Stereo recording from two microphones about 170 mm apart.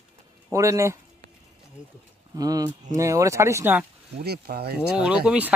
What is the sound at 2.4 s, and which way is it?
Speech, 20° right (ahead or behind).